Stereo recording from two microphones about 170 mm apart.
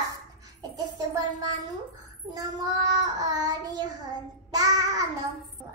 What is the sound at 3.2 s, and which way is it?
Speech, 25° right (ahead or behind).